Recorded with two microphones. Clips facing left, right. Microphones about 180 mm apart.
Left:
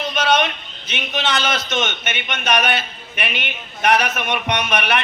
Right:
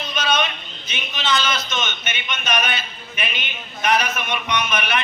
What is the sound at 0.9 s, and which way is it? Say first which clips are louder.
A man's voice: left 1 dB; 70° left (ahead or behind).